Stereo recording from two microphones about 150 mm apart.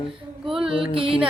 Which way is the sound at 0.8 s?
35° right (ahead or behind).